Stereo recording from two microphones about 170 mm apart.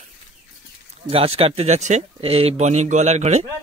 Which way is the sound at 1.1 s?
35° right (ahead or behind).